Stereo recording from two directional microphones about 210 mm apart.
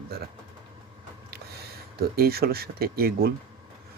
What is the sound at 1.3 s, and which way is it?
Speech, 50° right (ahead or behind).